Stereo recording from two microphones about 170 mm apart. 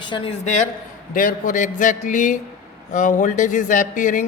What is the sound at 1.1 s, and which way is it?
Speech, 55° left (ahead or behind).